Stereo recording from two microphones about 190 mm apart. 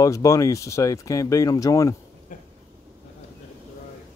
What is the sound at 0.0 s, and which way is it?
Speech, 15° left (ahead or behind).